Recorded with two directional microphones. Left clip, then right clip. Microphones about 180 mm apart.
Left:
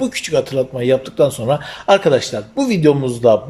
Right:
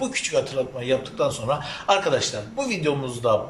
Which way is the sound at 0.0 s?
45° left (ahead or behind).